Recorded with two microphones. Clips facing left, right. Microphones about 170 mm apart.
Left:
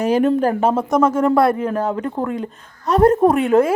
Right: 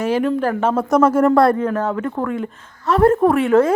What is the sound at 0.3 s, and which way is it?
Speech, 20° left (ahead or behind).